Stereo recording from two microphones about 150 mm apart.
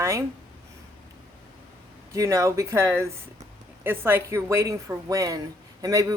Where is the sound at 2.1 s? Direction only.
20° right (ahead or behind).